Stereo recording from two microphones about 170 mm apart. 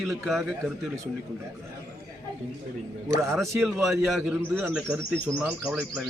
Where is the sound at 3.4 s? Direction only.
Centre (ahead or behind).